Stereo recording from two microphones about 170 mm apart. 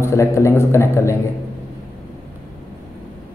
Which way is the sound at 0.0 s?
15° left (ahead or behind).